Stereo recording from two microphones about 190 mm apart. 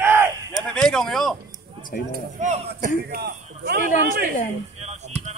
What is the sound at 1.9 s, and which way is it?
Speech, 50° left (ahead or behind).